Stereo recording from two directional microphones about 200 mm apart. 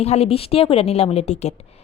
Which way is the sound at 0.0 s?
30° left (ahead or behind).